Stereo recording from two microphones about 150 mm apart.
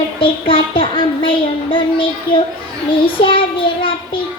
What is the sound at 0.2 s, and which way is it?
A child's voice, 35° left (ahead or behind).